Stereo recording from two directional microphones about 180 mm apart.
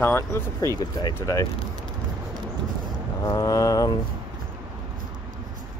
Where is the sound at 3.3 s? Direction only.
20° left (ahead or behind).